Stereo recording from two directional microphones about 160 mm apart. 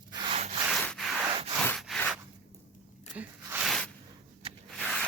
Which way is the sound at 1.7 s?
Centre (ahead or behind).